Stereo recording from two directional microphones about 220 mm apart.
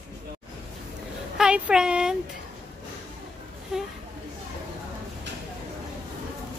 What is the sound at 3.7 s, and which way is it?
Speech, centre (ahead or behind).